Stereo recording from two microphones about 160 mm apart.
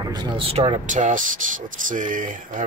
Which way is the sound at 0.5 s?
35° right (ahead or behind).